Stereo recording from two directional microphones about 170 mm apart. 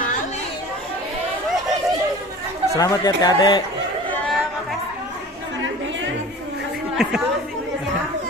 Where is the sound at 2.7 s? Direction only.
20° left (ahead or behind).